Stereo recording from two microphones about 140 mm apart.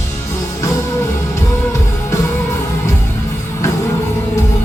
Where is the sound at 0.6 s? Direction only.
20° left (ahead or behind).